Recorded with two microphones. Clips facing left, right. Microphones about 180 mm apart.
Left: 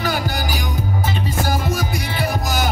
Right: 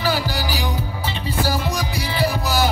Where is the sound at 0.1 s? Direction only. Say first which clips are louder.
Even; 45° left (ahead or behind).